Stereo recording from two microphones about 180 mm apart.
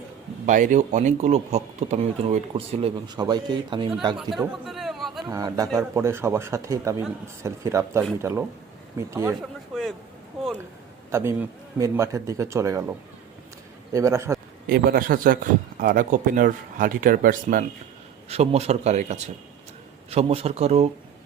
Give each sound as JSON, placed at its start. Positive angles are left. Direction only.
{"t": 0.4, "sound": "speech", "side_deg": -45}
{"t": 4.2, "sound": "speech", "side_deg": 0}
{"t": 5.3, "sound": "a man's voice", "side_deg": -20}
{"t": 9.7, "sound": "a sound", "side_deg": 5}
{"t": 11.1, "sound": "a man's voice", "side_deg": -15}
{"t": 13.9, "sound": "a man's voice", "side_deg": -15}
{"t": 14.7, "sound": "speech", "side_deg": -55}
{"t": 18.3, "sound": "speech", "side_deg": -35}